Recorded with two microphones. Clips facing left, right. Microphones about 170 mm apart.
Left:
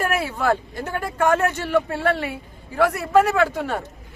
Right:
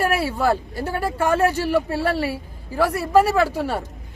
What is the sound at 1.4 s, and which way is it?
Speech, 35° right (ahead or behind).